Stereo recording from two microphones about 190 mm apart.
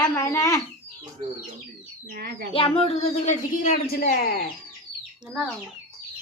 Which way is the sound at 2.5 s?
30° left (ahead or behind).